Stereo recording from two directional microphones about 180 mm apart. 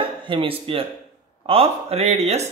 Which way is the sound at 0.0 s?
30° right (ahead or behind).